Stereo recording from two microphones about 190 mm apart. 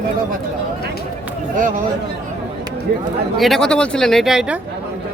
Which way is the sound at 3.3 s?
Centre (ahead or behind).